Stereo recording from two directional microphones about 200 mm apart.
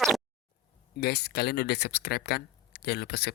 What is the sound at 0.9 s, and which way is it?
Speech, 55° left (ahead or behind).